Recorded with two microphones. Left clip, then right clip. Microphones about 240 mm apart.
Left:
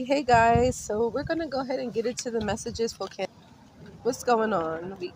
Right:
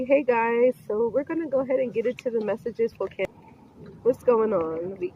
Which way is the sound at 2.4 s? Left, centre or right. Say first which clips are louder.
Right 3 dB; left.